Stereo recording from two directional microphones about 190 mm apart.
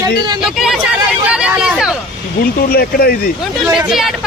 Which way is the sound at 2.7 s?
50° left (ahead or behind).